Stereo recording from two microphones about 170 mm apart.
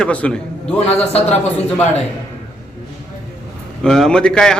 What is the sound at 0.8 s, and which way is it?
Speech, 35° left (ahead or behind).